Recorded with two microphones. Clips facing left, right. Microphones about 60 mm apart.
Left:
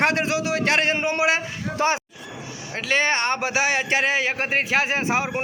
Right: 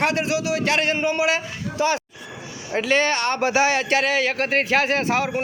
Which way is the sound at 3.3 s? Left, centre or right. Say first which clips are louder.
Right 3 dB; centre.